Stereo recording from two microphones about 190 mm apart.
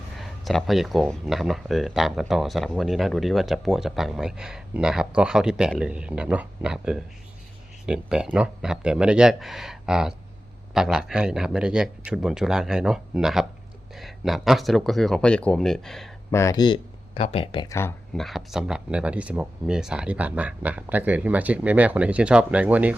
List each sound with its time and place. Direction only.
0.2 s speech: centre (ahead or behind)
16.3 s speech: 15° left (ahead or behind)
17.7 s speech: 15° left (ahead or behind)
18.1 s speech: centre (ahead or behind)